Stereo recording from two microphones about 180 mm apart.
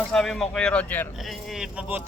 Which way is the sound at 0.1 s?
Centre (ahead or behind).